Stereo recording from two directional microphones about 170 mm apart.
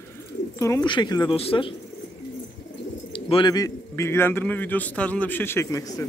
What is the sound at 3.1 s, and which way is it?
A man's voice, 30° left (ahead or behind).